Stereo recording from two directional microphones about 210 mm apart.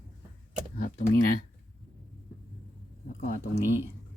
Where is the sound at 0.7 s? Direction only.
40° left (ahead or behind).